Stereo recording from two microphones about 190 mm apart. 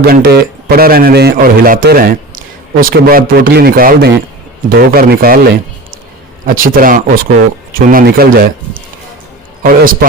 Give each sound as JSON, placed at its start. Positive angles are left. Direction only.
{"t": 0.0, "sound": "a man's voice", "side_deg": -55}